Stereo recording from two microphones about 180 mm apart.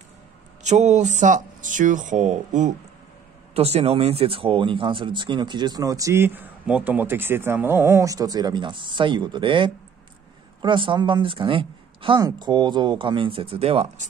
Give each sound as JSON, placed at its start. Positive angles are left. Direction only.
{"t": 0.7, "sound": "speech", "side_deg": -40}